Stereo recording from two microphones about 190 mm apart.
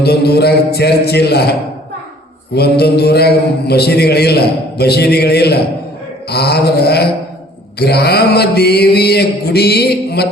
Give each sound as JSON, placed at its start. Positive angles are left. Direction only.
{"t": 0.0, "sound": "mantra", "side_deg": 60}
{"t": 2.6, "sound": "mantra", "side_deg": 55}